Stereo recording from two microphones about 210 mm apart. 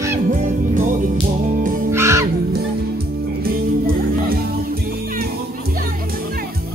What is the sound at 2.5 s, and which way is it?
Music, 45° right (ahead or behind).